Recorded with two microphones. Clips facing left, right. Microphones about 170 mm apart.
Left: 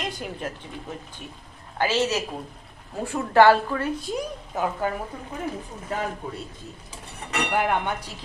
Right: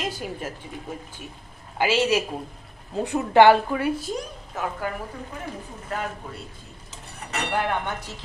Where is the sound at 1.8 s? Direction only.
10° right (ahead or behind).